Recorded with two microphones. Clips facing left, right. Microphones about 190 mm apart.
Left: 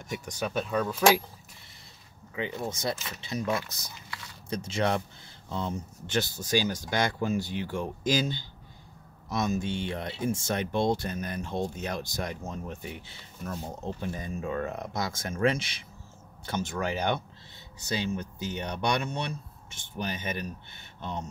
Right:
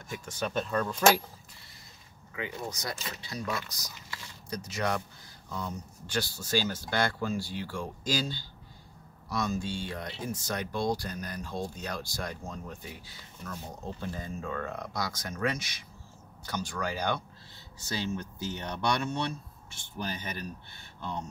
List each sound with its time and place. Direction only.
0.1 s speech: 15° left (ahead or behind)
2.3 s speech: 25° left (ahead or behind)